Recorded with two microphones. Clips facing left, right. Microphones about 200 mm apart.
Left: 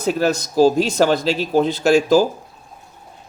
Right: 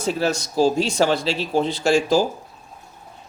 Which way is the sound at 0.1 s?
45° left (ahead or behind).